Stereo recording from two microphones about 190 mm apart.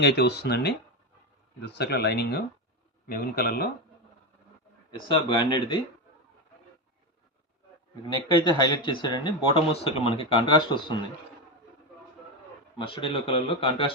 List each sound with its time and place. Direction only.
0.0 s speech: 60° left (ahead or behind)
4.9 s speech: 25° left (ahead or behind)
8.4 s speech: 25° left (ahead or behind)
12.8 s speech: 25° left (ahead or behind)